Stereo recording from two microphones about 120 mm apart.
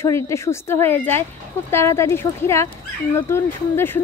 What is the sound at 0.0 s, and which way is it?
Speech, 25° left (ahead or behind).